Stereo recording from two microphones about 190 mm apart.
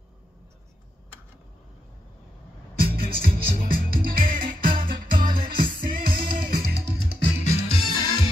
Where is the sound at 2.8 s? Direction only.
50° right (ahead or behind).